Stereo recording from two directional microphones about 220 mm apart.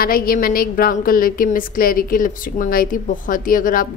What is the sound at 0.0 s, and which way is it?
A woman's voice, 40° left (ahead or behind).